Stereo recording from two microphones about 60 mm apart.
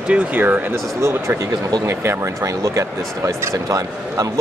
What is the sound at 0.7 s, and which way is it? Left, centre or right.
Speech, right.